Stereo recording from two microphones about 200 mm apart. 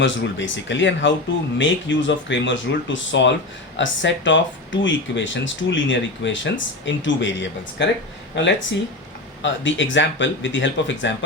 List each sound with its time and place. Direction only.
0.0 s speech: 65° left (ahead or behind)
9.4 s speech: 65° left (ahead or behind)